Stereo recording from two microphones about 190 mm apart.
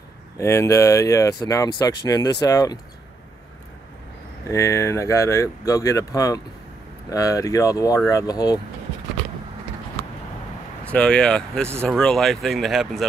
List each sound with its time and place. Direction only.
0.4 s speech: 15° left (ahead or behind)
4.5 s speech: 15° left (ahead or behind)
10.9 s speech: 5° left (ahead or behind)